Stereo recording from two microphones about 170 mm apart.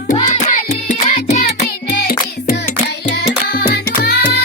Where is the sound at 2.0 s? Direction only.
65° left (ahead or behind).